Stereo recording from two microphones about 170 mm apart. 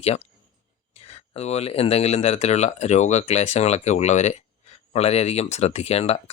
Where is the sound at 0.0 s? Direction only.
35° left (ahead or behind).